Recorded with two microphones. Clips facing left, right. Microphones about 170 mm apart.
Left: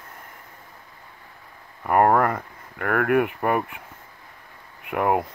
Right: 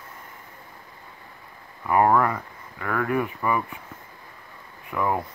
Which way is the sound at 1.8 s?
50° left (ahead or behind).